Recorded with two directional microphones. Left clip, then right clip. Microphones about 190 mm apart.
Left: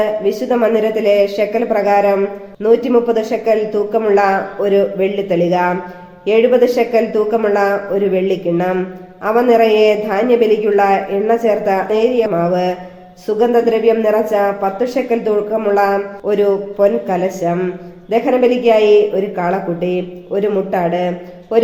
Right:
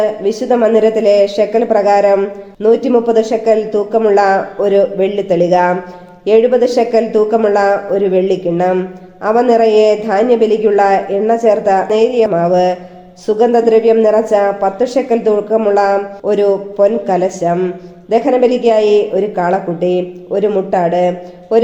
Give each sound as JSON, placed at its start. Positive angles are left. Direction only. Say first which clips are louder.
{"t": 0.0, "sound": "a woman's voice", "louder": "right 1 dB", "side_deg": -40}